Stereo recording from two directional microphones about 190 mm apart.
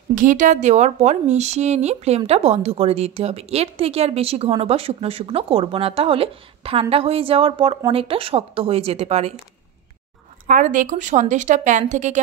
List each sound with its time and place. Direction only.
0.1 s a woman's voice: 45° right (ahead or behind)
10.4 s a woman's voice: 45° right (ahead or behind)